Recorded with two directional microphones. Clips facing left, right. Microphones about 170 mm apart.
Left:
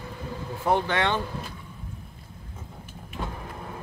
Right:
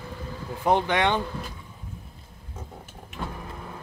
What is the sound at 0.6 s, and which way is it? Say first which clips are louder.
Speech: right 2 dB; 15° right (ahead or behind).